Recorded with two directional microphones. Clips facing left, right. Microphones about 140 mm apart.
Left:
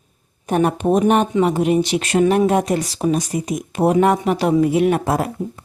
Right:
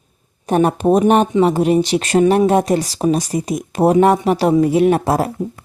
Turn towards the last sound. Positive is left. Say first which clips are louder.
# right 3 dB
turn(degrees=-35)  # may be behind; listen again after turning